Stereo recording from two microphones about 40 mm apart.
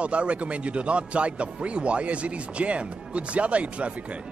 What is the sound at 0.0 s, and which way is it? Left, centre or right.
Speech, right.